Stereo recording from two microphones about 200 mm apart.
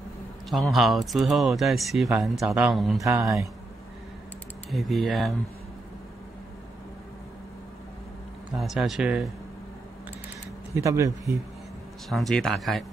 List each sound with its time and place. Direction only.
0.5 s speech: centre (ahead or behind)
3.0 s speech: 15° right (ahead or behind)
4.6 s speech: centre (ahead or behind)
8.5 s speech: centre (ahead or behind)
10.7 s speech: 15° right (ahead or behind)
12.1 s speech: centre (ahead or behind)